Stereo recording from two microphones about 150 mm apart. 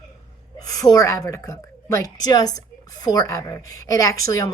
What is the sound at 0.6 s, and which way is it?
A woman's voice, 25° left (ahead or behind).